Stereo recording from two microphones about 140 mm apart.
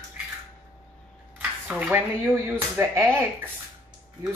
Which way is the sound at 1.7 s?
10° right (ahead or behind).